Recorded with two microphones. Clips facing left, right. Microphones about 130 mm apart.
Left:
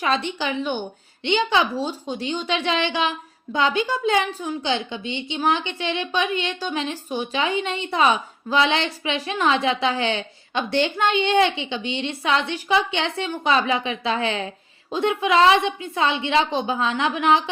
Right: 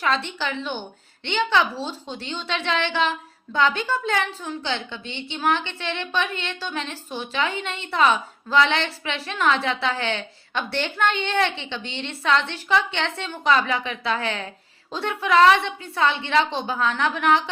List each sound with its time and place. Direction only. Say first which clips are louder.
0.0 s a woman's voice: left 2 dB; 15° left (ahead or behind)